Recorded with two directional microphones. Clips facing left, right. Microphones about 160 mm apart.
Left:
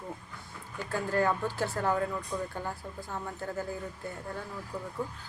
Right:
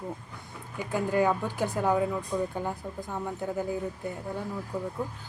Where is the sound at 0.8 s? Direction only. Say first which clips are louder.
Right 3 dB; 15° right (ahead or behind).